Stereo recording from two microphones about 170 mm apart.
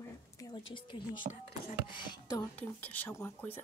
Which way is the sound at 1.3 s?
55° right (ahead or behind).